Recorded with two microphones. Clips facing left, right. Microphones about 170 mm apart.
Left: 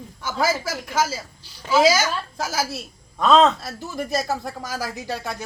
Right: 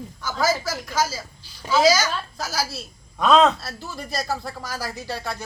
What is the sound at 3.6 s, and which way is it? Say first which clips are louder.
Speech: left 5 dB; 15° left (ahead or behind).